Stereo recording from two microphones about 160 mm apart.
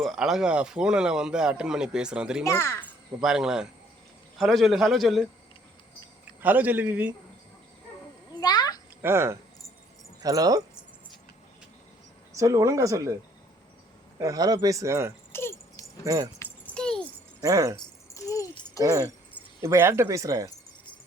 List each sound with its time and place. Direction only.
0.0 s speech: centre (ahead or behind)
2.4 s a child's voice: 15° left (ahead or behind)
3.2 s speech: 5° right (ahead or behind)
6.4 s a man's voice: 10° right (ahead or behind)
8.4 s a sound: 25° left (ahead or behind)
9.0 s speech: 15° right (ahead or behind)
12.4 s speech: 20° right (ahead or behind)
14.2 s speech: 20° right (ahead or behind)
15.3 s keys jangling: 15° left (ahead or behind)
16.0 s speech: 25° right (ahead or behind)
16.4 s keys jangling: 5° left (ahead or behind)
17.4 s speech: 20° right (ahead or behind)
18.1 s a sound: 20° left (ahead or behind)
18.8 s a man's voice: 20° right (ahead or behind)